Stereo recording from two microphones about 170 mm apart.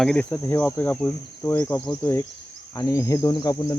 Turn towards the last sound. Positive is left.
turn(degrees=25)  # may be behind; listen again after turning